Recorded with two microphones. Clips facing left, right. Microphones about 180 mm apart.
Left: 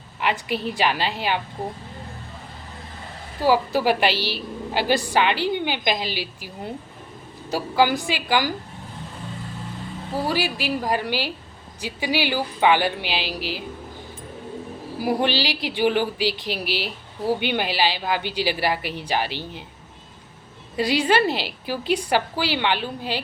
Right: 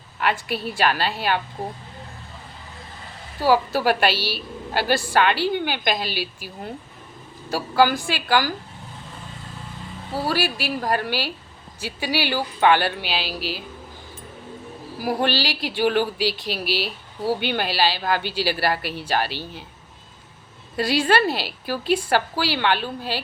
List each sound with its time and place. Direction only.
0.2 s a woman's voice: 15° left (ahead or behind)
3.4 s a woman's voice: 15° left (ahead or behind)
7.5 s a woman's voice: 20° left (ahead or behind)
10.2 s a woman's voice: 15° left (ahead or behind)
15.0 s a woman's voice: 15° left (ahead or behind)
20.7 s a woman's voice: 15° left (ahead or behind)